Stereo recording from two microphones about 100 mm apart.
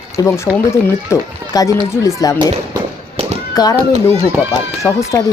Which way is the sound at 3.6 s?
40° left (ahead or behind).